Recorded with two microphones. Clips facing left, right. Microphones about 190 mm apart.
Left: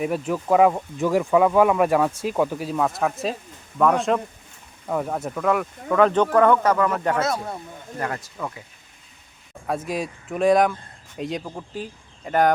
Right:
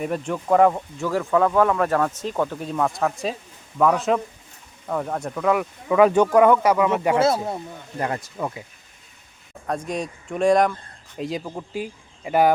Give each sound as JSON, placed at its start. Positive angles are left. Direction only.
{"t": 0.0, "sound": "speech", "side_deg": 5}
{"t": 7.2, "sound": "speech", "side_deg": -30}
{"t": 9.6, "sound": "speech", "side_deg": 5}